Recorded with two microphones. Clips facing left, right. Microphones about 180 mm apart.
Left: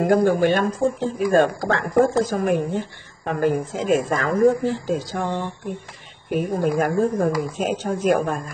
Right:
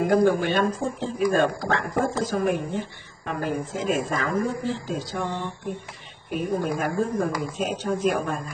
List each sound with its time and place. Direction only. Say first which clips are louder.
0.0 s speech: left 3 dB; 50° left (ahead or behind)
6.5 s speech: left 5 dB; 40° left (ahead or behind)